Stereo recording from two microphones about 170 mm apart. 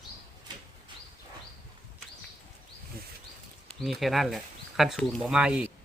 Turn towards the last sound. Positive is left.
turn(degrees=-5)  # may be behind; listen again after turning